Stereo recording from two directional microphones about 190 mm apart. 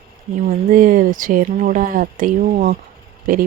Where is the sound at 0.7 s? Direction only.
45° right (ahead or behind).